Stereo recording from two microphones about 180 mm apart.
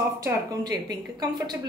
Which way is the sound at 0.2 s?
20° right (ahead or behind).